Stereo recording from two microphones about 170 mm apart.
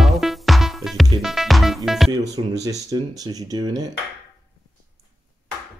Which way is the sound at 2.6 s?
20° right (ahead or behind).